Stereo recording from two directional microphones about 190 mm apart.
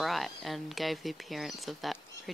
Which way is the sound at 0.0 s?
Centre (ahead or behind).